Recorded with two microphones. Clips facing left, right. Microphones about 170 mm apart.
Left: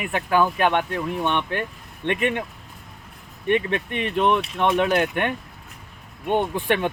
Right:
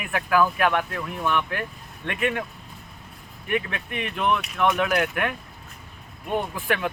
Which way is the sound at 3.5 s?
30° left (ahead or behind).